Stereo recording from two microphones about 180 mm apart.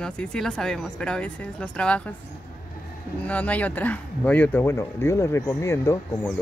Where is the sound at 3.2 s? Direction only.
10° left (ahead or behind).